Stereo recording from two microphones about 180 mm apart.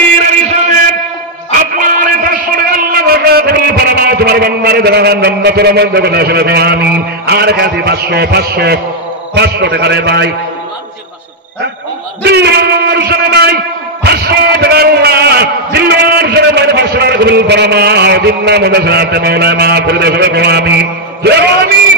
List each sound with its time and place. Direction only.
1.8 s a sound: 50° right (ahead or behind)
9.3 s a man's voice: 70° right (ahead or behind)
12.2 s a man's voice: 65° right (ahead or behind)